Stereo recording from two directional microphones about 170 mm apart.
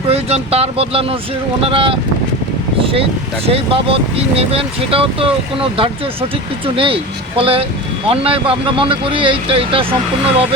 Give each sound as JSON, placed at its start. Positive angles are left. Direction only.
{"t": 0.1, "sound": "speech", "side_deg": -35}